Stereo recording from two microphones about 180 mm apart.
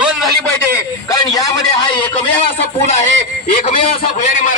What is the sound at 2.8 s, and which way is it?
Speech, 40° left (ahead or behind).